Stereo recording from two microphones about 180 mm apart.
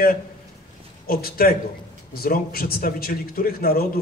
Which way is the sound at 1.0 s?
55° left (ahead or behind).